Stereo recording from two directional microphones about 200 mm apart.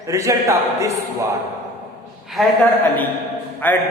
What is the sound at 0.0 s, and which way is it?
A man's voice, 15° right (ahead or behind).